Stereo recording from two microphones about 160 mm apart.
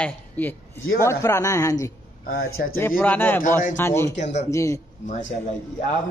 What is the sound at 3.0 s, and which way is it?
Speech, 10° left (ahead or behind).